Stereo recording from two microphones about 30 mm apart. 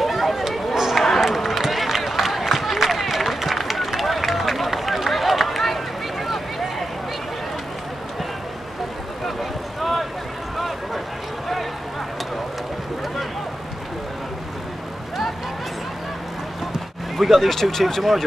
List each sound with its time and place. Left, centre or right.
0.0 s a sound: centre
1.2 s run: centre
6.2 s vehicle: centre
9.2 s vehicle: centre
17.2 s speech: centre